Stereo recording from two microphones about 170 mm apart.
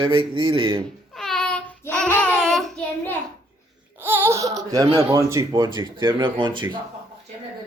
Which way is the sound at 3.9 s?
15° right (ahead or behind).